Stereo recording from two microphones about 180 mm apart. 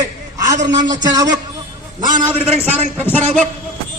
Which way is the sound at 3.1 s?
10° left (ahead or behind).